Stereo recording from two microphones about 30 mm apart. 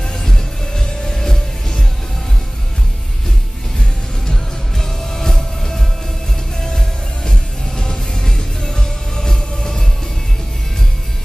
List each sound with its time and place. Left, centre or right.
0.1 s music: centre
4.3 s music: centre
7.2 s music: left